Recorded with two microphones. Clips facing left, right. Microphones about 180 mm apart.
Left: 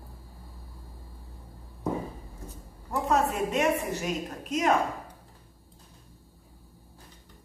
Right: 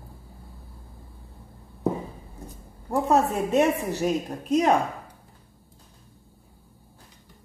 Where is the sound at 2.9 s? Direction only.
35° right (ahead or behind).